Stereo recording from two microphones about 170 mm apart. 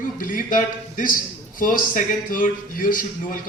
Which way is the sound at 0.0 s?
55° left (ahead or behind).